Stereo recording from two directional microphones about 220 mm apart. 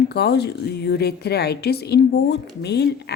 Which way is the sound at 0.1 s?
50° left (ahead or behind).